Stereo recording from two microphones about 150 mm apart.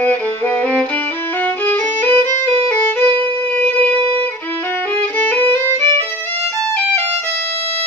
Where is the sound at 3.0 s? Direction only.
45° right (ahead or behind).